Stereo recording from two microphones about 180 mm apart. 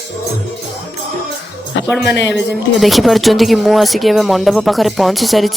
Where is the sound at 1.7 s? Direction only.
85° left.